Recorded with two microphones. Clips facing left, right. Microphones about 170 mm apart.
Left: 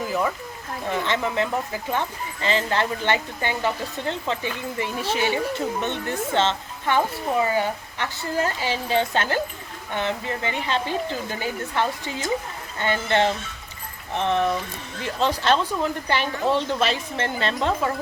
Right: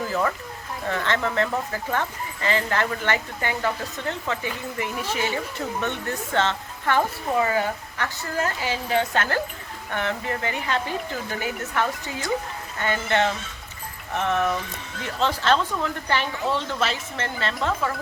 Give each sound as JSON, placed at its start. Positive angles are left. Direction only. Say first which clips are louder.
{"t": 0.0, "sound": "speech", "louder": "even", "side_deg": 10}
{"t": 15.2, "sound": "speech", "louder": "left 1 dB", "side_deg": 15}